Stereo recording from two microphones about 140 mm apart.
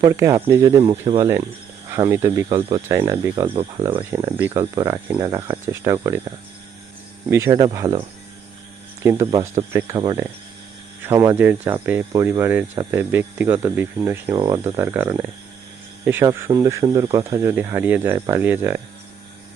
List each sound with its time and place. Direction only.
0.0 s speech: 20° right (ahead or behind)
0.8 s speech: 40° right (ahead or behind)
1.2 s speech: 25° right (ahead or behind)
2.6 s speech: 40° right (ahead or behind)
2.9 s speech: 20° right (ahead or behind)
3.4 s speech: 40° right (ahead or behind)
4.4 s speech: 15° right (ahead or behind)
7.3 s speech: 20° right (ahead or behind)
9.0 s speech: 20° right (ahead or behind)
9.9 s speech: 35° right (ahead or behind)
11.0 s speech: 20° right (ahead or behind)
14.3 s speech: 30° right (ahead or behind)
14.6 s speech: 15° right (ahead or behind)